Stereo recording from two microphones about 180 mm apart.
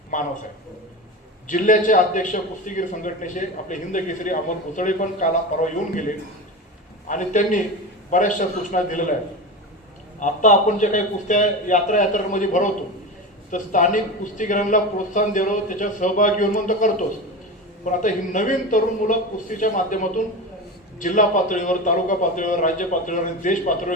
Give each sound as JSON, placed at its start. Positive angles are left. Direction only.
{"t": 0.1, "sound": "a man's voice", "side_deg": 45}
{"t": 1.5, "sound": "a man's voice", "side_deg": 45}
{"t": 7.1, "sound": "a man's voice", "side_deg": 45}
{"t": 10.2, "sound": "a man's voice", "side_deg": 45}